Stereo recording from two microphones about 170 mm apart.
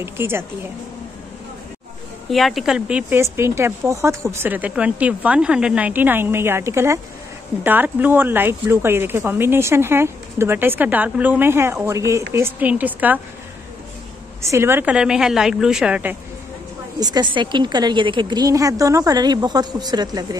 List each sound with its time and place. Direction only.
0.0 s speech: 15° right (ahead or behind)
2.3 s speech: centre (ahead or behind)
14.4 s a woman's voice: 15° right (ahead or behind)
17.0 s a woman's voice: 25° right (ahead or behind)